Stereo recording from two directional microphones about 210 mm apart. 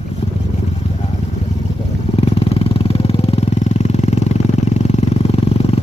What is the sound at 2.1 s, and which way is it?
Vehicle, 30° left (ahead or behind).